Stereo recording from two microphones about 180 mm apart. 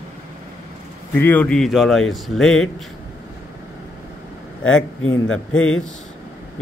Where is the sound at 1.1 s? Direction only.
10° left (ahead or behind).